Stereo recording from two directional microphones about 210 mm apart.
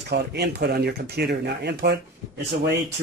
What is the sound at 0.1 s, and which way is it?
Speech, 50° right (ahead or behind).